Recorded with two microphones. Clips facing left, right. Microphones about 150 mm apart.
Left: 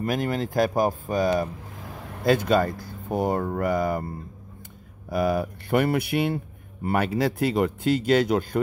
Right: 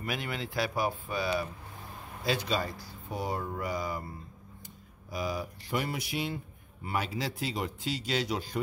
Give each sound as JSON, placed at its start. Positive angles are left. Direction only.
{"t": 0.0, "sound": "speech", "side_deg": 45}
{"t": 1.8, "sound": "a sound", "side_deg": 90}
{"t": 2.2, "sound": "speech", "side_deg": 50}
{"t": 5.1, "sound": "speech", "side_deg": 55}